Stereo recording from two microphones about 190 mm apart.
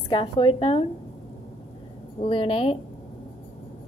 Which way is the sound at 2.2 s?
30° left (ahead or behind).